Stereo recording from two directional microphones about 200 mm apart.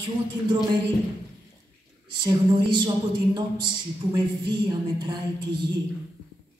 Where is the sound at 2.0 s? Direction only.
25° right (ahead or behind).